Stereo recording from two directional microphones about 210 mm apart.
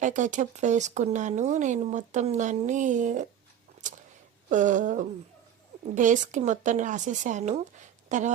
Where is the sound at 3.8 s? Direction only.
35° right (ahead or behind).